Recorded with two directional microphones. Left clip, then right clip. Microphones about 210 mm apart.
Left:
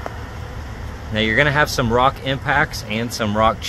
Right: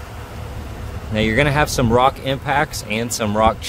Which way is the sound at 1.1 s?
20° right (ahead or behind).